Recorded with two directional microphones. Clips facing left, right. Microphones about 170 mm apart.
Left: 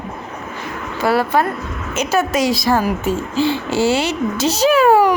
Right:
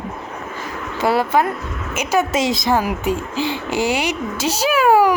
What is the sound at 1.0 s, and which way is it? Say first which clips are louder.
Speech: left 1 dB; 20° right (ahead or behind).